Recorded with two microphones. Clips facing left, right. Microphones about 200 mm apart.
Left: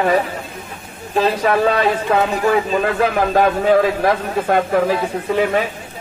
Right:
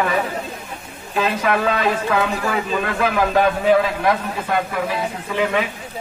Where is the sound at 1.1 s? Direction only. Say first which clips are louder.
Left 4 dB; 35° left (ahead or behind).